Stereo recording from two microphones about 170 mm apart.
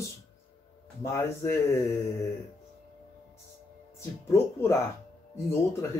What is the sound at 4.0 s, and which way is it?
Speech, 15° left (ahead or behind).